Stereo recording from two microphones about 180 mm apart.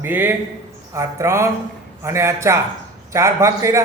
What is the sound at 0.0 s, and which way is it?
A man's voice, 10° right (ahead or behind).